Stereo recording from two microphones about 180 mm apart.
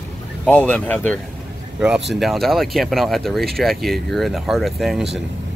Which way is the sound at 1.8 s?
5° right (ahead or behind).